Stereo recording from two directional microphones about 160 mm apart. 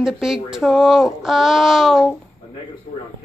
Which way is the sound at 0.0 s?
Centre (ahead or behind).